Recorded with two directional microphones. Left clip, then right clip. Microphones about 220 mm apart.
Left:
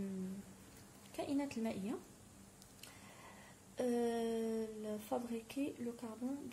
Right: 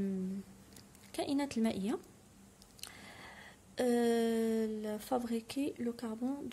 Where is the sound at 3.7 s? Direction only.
40° right (ahead or behind).